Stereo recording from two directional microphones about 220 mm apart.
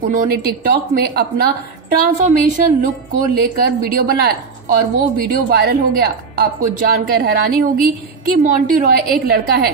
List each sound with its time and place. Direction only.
0.1 s a woman's voice: 40° right (ahead or behind)